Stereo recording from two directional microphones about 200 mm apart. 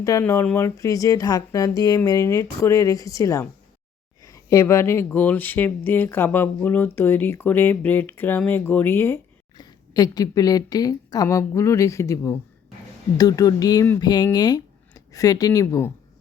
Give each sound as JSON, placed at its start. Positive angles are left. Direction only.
{"t": 0.0, "sound": "speech", "side_deg": 15}